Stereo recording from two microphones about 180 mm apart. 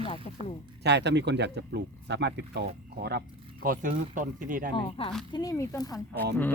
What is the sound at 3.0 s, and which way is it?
Speech, 60° right (ahead or behind).